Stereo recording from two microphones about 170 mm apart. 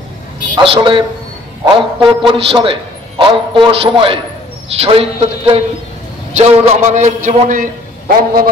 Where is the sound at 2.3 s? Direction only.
30° right (ahead or behind).